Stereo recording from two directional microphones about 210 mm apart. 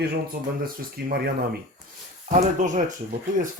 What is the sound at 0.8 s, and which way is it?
Speech, 45° right (ahead or behind).